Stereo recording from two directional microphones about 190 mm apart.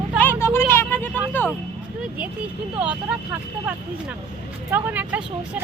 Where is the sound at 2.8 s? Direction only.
5° right (ahead or behind).